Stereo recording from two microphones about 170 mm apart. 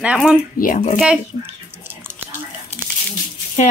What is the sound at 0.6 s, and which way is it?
Speech, 50° left (ahead or behind).